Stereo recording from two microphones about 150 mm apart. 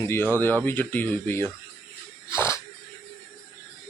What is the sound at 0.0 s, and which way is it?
Speech, 15° left (ahead or behind).